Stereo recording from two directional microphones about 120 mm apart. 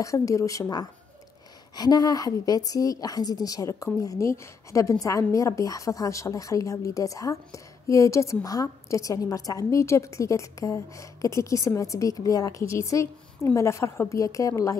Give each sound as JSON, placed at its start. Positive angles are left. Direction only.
{"t": 0.0, "sound": "a woman's voice", "side_deg": 25}